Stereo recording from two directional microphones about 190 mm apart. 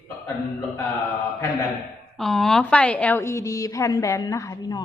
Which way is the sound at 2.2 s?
Centre (ahead or behind).